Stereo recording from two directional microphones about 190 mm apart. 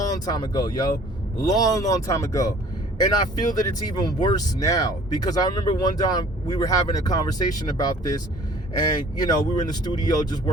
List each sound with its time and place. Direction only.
0.3 s speech: 20° left (ahead or behind)